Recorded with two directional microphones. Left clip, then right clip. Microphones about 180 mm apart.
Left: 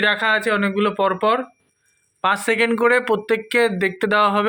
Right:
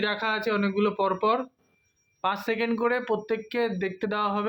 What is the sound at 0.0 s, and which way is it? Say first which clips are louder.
Speech: left 9 dB; 10° left (ahead or behind).